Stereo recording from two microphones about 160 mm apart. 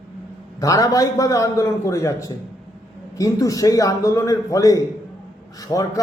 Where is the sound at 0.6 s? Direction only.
20° left (ahead or behind).